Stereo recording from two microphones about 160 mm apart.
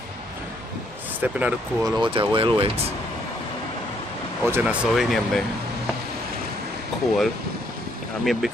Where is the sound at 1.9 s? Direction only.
30° right (ahead or behind).